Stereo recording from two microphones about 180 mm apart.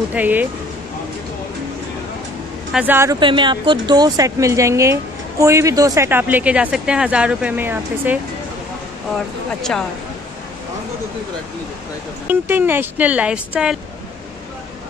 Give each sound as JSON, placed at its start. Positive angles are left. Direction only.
{"t": 0.1, "sound": "speech", "side_deg": -10}
{"t": 2.7, "sound": "speech", "side_deg": -10}
{"t": 3.2, "sound": "a woman's voice", "side_deg": -25}
{"t": 9.6, "sound": "speech", "side_deg": 5}
{"t": 12.3, "sound": "speech", "side_deg": -10}